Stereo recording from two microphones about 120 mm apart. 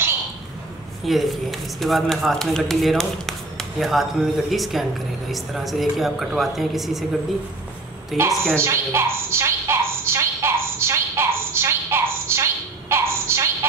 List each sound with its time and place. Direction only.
1.0 s a woman's voice: centre (ahead or behind)
8.1 s a woman's voice: centre (ahead or behind)
8.5 s a sound: 20° right (ahead or behind)